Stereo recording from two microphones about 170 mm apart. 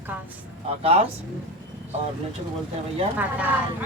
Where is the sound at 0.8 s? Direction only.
35° right (ahead or behind).